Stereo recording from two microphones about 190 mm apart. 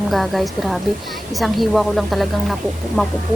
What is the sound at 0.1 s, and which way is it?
Speech, centre (ahead or behind).